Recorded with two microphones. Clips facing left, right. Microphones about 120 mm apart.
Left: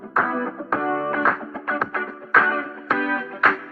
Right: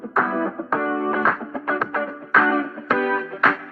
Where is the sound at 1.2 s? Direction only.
Centre (ahead or behind).